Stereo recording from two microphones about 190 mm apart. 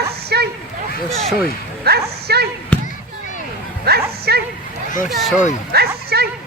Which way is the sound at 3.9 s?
55° right (ahead or behind).